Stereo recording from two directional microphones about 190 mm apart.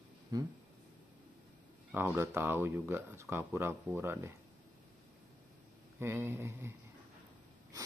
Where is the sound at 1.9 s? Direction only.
10° right (ahead or behind).